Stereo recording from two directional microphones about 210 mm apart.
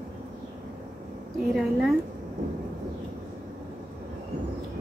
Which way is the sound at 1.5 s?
Centre (ahead or behind).